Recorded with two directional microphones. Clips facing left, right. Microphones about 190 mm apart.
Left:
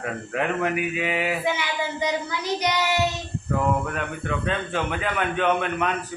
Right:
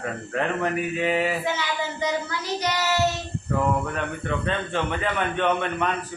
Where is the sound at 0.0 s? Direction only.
5° left (ahead or behind).